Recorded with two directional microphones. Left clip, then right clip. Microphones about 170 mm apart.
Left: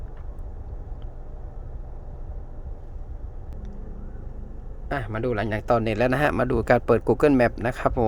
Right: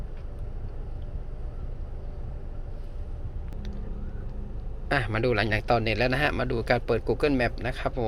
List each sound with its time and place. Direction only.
4.9 s a man's voice: 15° left (ahead or behind); by 8.0 s 50° left (ahead or behind)